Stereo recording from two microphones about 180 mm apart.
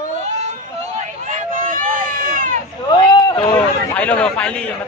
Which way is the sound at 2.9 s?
25° left (ahead or behind).